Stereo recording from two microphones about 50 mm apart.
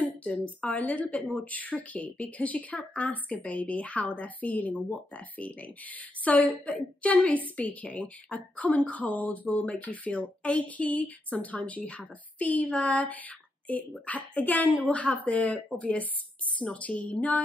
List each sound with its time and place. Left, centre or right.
0.0 s a woman's voice: left